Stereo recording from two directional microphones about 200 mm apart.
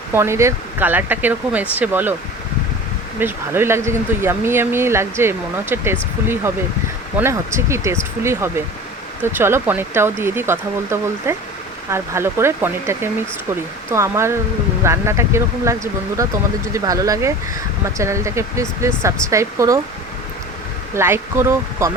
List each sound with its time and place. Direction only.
0.1 s speech: 15° right (ahead or behind)
3.2 s speech: 10° right (ahead or behind)
20.9 s speech: 10° right (ahead or behind)